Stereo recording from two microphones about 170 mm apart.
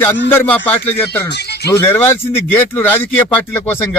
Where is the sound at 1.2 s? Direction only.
75° left (ahead or behind).